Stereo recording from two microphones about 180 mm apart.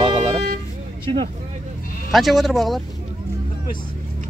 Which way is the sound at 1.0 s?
30° right (ahead or behind).